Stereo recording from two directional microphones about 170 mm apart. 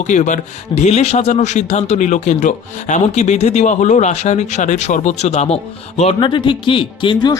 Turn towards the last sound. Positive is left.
turn(degrees=25)  # may be behind; listen again after turning